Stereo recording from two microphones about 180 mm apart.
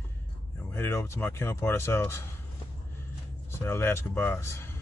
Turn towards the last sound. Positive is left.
turn(degrees=15)  # may be behind; listen again after turning